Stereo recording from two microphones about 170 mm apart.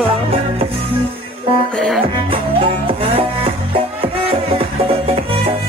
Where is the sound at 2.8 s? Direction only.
35° right (ahead or behind).